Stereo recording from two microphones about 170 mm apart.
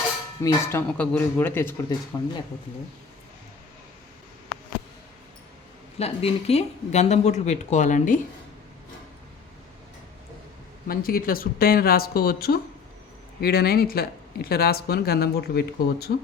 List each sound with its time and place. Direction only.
0.4 s speech: 15° left (ahead or behind)
6.0 s speech: 35° left (ahead or behind)
10.8 s speech: 60° left (ahead or behind)